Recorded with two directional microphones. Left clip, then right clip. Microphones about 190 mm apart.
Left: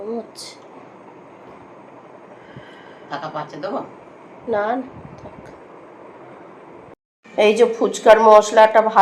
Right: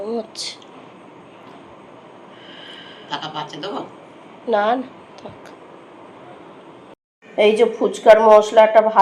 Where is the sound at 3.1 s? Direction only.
50° left (ahead or behind).